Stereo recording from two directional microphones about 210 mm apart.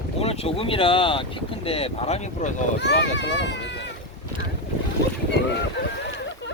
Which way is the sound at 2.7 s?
55° left (ahead or behind).